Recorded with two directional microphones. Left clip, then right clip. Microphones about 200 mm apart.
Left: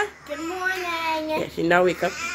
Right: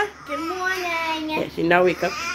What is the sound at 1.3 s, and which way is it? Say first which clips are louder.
Speech: right 2 dB; 10° left (ahead or behind).